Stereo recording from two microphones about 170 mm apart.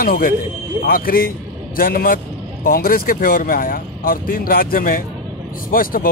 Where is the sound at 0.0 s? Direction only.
55° left (ahead or behind).